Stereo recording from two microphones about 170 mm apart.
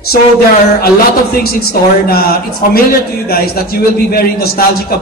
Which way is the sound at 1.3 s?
60° left (ahead or behind).